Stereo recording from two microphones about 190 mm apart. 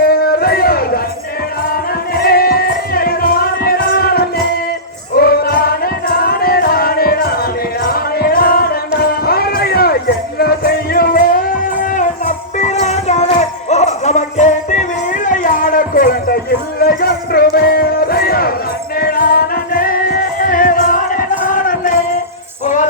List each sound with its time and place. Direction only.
0.1 s a sound: 55° left (ahead or behind)
1.7 s music: 55° left (ahead or behind)
16.8 s crowd: 55° left (ahead or behind)
18.9 s music: 50° left (ahead or behind)